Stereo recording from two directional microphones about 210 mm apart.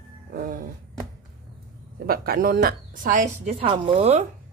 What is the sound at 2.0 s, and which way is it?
A woman's voice, 45° right (ahead or behind).